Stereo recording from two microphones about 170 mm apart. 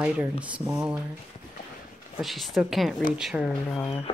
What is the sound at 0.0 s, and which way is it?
Speech, 10° right (ahead or behind).